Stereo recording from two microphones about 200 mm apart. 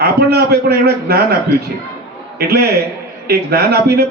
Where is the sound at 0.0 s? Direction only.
50° right (ahead or behind).